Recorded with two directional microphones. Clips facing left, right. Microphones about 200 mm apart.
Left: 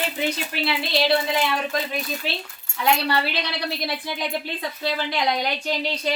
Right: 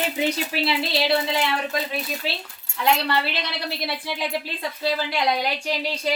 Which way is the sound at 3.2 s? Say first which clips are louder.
Left 2 dB; centre (ahead or behind).